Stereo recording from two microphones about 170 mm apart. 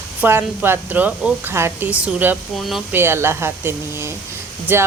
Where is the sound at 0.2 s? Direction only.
10° right (ahead or behind).